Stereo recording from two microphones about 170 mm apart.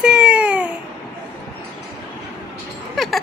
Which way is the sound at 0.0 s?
5° right (ahead or behind).